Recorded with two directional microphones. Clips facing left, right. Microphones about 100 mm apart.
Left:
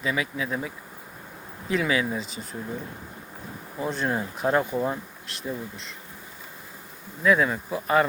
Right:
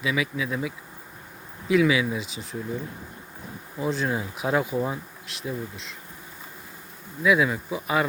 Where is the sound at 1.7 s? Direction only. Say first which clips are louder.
Right 4 dB; 5° right (ahead or behind).